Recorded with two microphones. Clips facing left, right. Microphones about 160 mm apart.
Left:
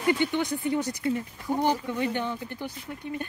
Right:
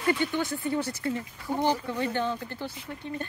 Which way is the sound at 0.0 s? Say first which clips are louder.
Left 2 dB; 20° left (ahead or behind).